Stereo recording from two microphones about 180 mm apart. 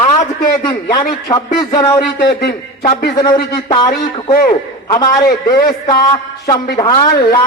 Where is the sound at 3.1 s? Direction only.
25° left (ahead or behind).